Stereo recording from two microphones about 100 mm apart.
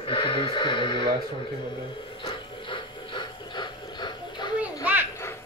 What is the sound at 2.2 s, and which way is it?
Ratchet, 60° left (ahead or behind).